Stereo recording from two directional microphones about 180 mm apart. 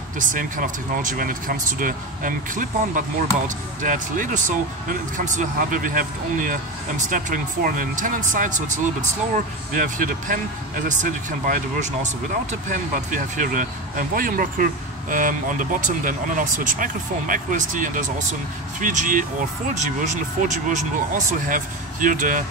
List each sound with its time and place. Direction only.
0.2 s speech: 50° right (ahead or behind)